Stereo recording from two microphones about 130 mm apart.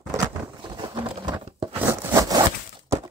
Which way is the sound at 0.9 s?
35° right (ahead or behind).